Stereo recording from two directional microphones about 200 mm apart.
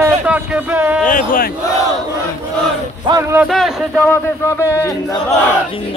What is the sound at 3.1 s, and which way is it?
Speech, 15° right (ahead or behind).